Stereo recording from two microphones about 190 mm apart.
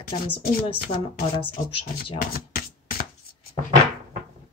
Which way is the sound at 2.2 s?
50° left (ahead or behind).